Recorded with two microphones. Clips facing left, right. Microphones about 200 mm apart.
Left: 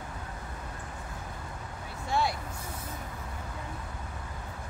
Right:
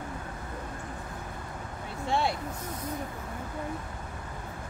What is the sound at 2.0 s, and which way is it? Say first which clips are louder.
Vehicle: right 1 dB; 25° right (ahead or behind).